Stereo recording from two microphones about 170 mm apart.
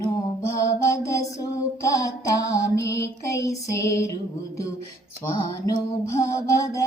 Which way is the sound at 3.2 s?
20° left (ahead or behind).